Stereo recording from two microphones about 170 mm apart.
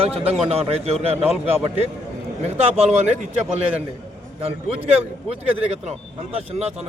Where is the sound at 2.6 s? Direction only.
40° right (ahead or behind).